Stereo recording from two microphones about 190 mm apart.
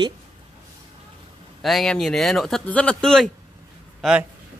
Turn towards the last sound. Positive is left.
turn(degrees=0)  # may be behind; listen again after turning